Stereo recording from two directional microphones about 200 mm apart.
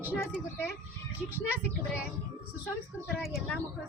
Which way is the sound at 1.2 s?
10° right (ahead or behind).